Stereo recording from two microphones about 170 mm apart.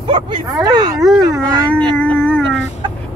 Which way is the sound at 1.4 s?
25° right (ahead or behind).